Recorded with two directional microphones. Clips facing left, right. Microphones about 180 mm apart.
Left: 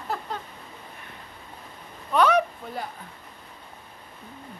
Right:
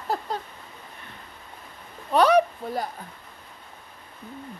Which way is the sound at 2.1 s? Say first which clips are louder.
Right 3 dB; 35° right (ahead or behind).